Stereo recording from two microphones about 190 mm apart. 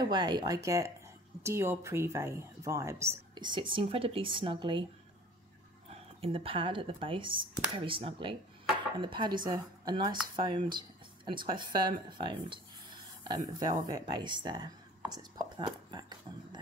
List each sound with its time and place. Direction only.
0.0 s speech: 25° right (ahead or behind)
5.9 s speech: 30° right (ahead or behind)
15.0 s a sound: 20° right (ahead or behind)